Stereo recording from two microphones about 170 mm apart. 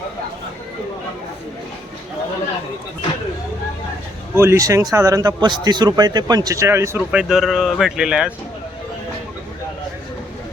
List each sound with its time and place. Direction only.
4.4 s speech: 15° right (ahead or behind)